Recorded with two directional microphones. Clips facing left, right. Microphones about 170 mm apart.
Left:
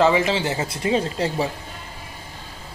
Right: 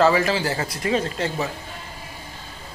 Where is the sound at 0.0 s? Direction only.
20° left (ahead or behind).